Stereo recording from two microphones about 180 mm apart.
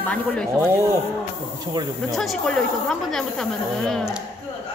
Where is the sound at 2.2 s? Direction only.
5° left (ahead or behind).